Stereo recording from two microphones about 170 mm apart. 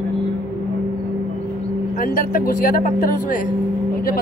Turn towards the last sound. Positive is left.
turn(degrees=60)  # may be behind; listen again after turning